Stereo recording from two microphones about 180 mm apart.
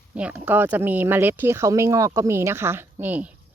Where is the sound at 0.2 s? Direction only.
10° right (ahead or behind).